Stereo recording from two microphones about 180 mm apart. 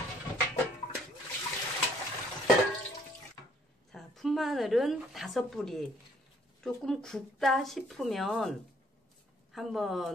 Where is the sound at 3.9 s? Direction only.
Centre (ahead or behind).